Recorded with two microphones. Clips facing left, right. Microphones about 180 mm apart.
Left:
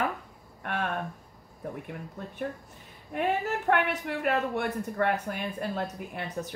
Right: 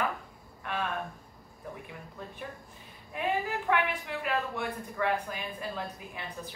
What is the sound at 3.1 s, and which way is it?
Speech, 55° left (ahead or behind).